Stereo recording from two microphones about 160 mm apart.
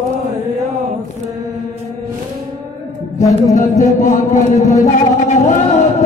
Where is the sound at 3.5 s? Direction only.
50° left (ahead or behind).